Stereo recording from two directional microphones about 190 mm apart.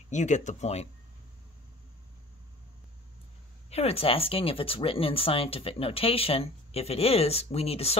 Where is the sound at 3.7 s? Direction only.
30° left (ahead or behind).